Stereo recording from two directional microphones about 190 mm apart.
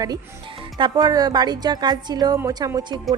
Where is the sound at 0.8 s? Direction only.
20° right (ahead or behind).